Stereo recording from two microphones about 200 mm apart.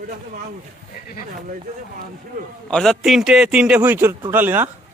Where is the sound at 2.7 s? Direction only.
5° left (ahead or behind).